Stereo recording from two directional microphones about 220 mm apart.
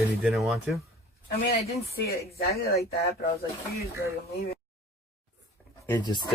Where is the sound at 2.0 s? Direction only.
45° left (ahead or behind).